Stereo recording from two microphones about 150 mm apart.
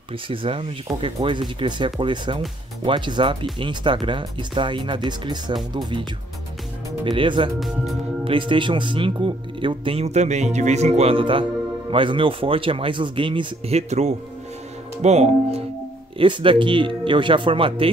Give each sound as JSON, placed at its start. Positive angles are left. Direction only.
{"t": 0.3, "sound": "speech", "side_deg": -35}
{"t": 7.1, "sound": "speech", "side_deg": -35}
{"t": 16.2, "sound": "speech", "side_deg": -35}